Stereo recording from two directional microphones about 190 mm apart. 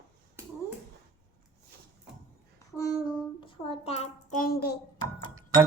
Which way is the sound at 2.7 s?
15° left (ahead or behind).